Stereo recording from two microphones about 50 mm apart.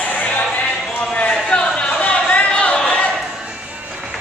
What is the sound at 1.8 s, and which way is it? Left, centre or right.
Chatter, left.